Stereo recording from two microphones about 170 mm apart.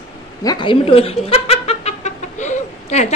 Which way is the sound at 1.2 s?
35° left (ahead or behind).